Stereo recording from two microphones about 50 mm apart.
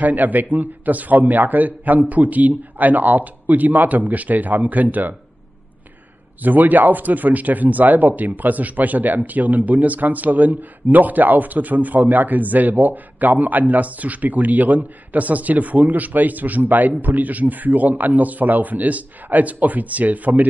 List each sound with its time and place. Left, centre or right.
0.0 s speech: right
6.4 s speech: right